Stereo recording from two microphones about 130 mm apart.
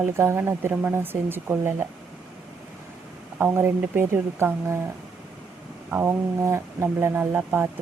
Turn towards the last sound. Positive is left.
turn(degrees=-15)  # may be behind; listen again after turning